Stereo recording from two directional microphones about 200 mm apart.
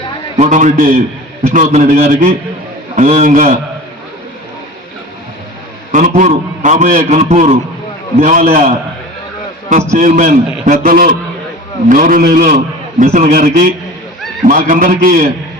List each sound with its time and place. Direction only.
0.3 s a man's voice: 35° right (ahead or behind)
5.9 s a man's voice: 40° right (ahead or behind)